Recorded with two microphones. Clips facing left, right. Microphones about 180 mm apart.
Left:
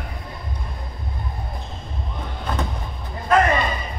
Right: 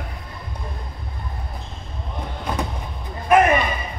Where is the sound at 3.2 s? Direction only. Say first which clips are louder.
Right 2 dB; 15° right (ahead or behind).